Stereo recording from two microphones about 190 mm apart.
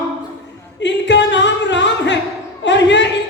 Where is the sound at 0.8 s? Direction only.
70° left (ahead or behind).